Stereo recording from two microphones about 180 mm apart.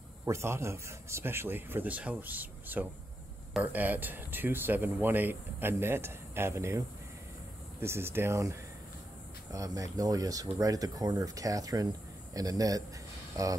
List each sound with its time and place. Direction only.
0.2 s speech: 15° right (ahead or behind)
7.8 s speech: 15° right (ahead or behind)